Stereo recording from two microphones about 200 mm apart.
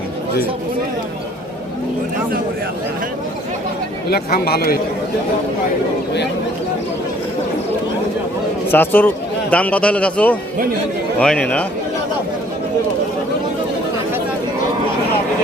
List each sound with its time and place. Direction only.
4.1 s speech: 50° left (ahead or behind)
8.7 s a man's voice: 10° left (ahead or behind)